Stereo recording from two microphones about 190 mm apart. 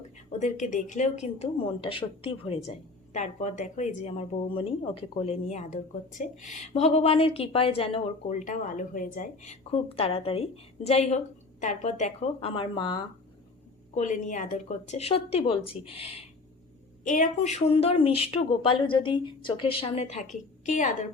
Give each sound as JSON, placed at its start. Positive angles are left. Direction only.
{"t": 0.3, "sound": "a woman's voice", "side_deg": 40}
{"t": 13.9, "sound": "a woman's voice", "side_deg": 40}